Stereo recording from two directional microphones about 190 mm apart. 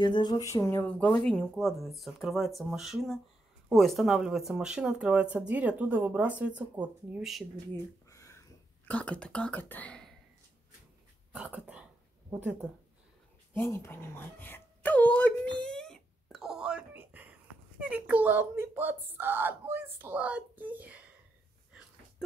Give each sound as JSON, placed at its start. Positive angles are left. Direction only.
{"t": 0.0, "sound": "speech", "side_deg": 20}
{"t": 8.1, "sound": "whispering", "side_deg": 15}
{"t": 11.3, "sound": "speech", "side_deg": -5}
{"t": 13.5, "sound": "speech", "side_deg": 15}
{"t": 15.6, "sound": "wail", "side_deg": 5}
{"t": 17.8, "sound": "speech", "side_deg": -10}